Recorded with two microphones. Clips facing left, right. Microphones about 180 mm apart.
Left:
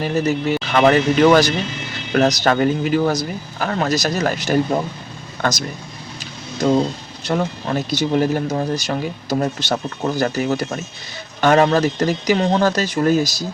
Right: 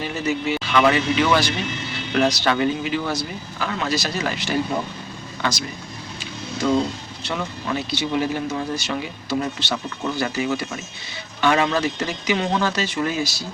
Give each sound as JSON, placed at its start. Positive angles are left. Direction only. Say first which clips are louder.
{"t": 0.0, "sound": "speech", "louder": "left 5 dB", "side_deg": 40}
{"t": 7.3, "sound": "speech", "louder": "left 6 dB", "side_deg": 40}